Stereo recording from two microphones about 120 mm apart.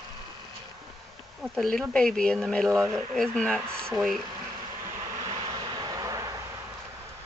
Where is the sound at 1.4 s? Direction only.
5° left (ahead or behind).